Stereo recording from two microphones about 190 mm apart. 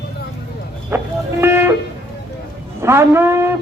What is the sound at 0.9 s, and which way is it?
Music, 10° right (ahead or behind).